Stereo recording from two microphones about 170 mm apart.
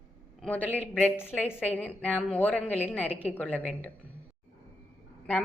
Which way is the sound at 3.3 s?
10° left (ahead or behind).